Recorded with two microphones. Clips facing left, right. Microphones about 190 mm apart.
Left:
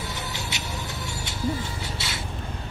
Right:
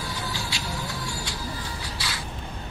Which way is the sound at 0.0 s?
20° left (ahead or behind).